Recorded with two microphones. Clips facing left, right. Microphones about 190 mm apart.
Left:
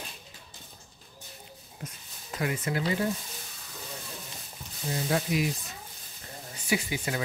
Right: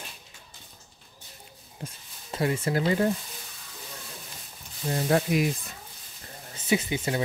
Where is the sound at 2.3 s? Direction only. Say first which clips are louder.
Right 4 dB; 30° right (ahead or behind).